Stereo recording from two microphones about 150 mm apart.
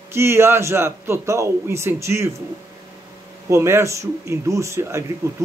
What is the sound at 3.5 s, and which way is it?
Speech, 20° right (ahead or behind).